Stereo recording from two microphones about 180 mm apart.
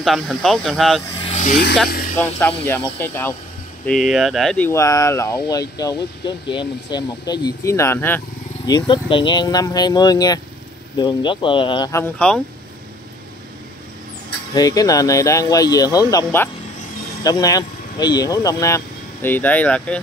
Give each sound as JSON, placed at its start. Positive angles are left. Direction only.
{"t": 0.0, "sound": "speech", "side_deg": 0}
{"t": 1.2, "sound": "vehicle", "side_deg": 40}
{"t": 1.9, "sound": "music", "side_deg": 55}
{"t": 2.1, "sound": "speech", "side_deg": 10}
{"t": 3.8, "sound": "speech", "side_deg": 0}
{"t": 4.6, "sound": "speech", "side_deg": 15}
{"t": 8.6, "sound": "speech", "side_deg": 25}
{"t": 11.9, "sound": "speech", "side_deg": 10}
{"t": 14.5, "sound": "speech", "side_deg": 20}